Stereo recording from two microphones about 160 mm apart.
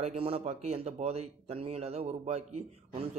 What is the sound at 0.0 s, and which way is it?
Speech, 40° right (ahead or behind).